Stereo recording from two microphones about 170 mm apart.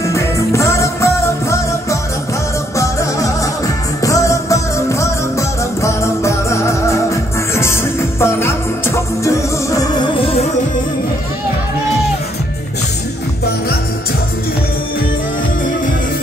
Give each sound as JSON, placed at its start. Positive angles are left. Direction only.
{"t": 0.0, "sound": "music", "side_deg": 15}